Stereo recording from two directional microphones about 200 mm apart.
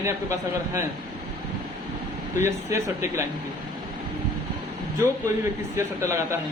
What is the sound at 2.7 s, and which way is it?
Speech, 15° right (ahead or behind).